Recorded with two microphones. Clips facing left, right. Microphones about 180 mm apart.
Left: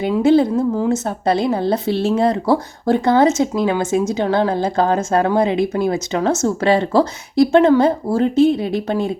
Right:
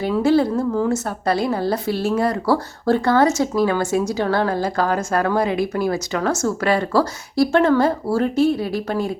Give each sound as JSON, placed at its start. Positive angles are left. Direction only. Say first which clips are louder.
{"t": 0.0, "sound": "a woman's voice", "louder": "left 3 dB", "side_deg": 20}